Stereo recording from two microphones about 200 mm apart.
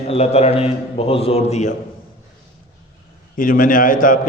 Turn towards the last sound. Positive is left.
turn(degrees=45)  # may be behind; listen again after turning